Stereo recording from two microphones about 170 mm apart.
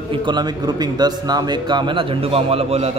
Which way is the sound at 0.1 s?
25° right (ahead or behind).